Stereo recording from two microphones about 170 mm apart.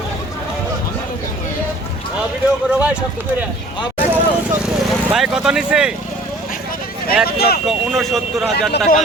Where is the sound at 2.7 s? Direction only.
5° right (ahead or behind).